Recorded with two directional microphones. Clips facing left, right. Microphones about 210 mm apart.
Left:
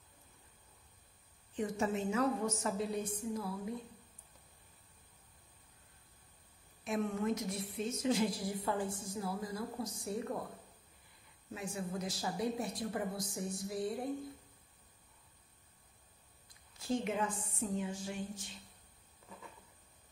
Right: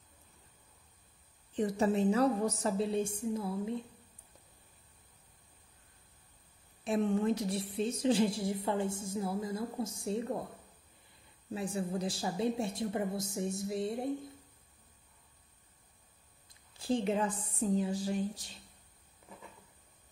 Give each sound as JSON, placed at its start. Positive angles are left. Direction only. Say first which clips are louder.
{"t": 1.5, "sound": "a woman's voice", "louder": "right 5 dB", "side_deg": -35}
{"t": 6.8, "sound": "a woman's voice", "louder": "right 5 dB", "side_deg": -30}
{"t": 11.5, "sound": "a woman's voice", "louder": "right 5 dB", "side_deg": -35}
{"t": 16.7, "sound": "a woman's voice", "louder": "right 4 dB", "side_deg": -30}